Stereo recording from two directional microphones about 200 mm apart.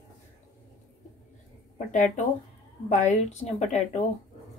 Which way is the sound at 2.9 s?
35° left (ahead or behind).